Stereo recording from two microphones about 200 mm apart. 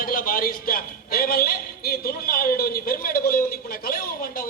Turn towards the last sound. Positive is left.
turn(degrees=45)  # may be behind; listen again after turning